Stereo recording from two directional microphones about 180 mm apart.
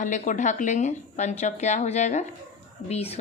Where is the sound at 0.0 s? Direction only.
45° left (ahead or behind).